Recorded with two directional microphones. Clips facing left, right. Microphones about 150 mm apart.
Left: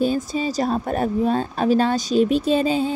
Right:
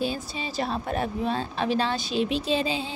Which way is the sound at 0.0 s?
45° left (ahead or behind).